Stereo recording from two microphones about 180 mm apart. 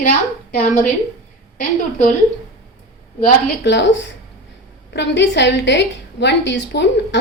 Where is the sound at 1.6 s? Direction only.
45° left (ahead or behind).